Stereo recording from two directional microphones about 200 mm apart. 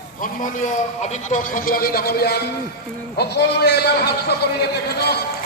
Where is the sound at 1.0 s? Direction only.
35° left (ahead or behind).